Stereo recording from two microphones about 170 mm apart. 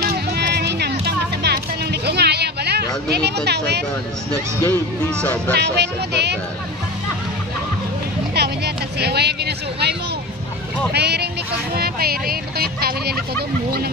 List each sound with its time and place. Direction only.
0.0 s music: 65° right (ahead or behind)
3.4 s speech: 80° right
4.6 s speech: 15° left (ahead or behind)
5.5 s speech: 80° right
8.4 s a sound: 75° right (ahead or behind)
10.9 s speech: 75° right (ahead or behind)